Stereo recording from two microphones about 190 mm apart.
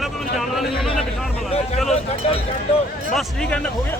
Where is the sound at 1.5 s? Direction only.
30° left (ahead or behind).